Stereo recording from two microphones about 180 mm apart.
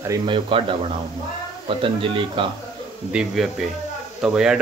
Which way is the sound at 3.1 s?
5° right (ahead or behind).